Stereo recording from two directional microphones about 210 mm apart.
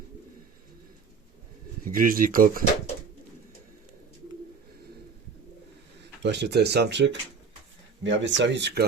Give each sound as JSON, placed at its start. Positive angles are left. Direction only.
{"t": 1.8, "sound": "speech", "side_deg": -40}
{"t": 6.2, "sound": "speech", "side_deg": -55}